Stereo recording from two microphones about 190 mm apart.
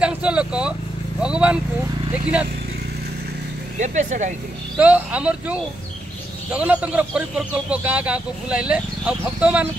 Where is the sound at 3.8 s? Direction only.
40° right (ahead or behind).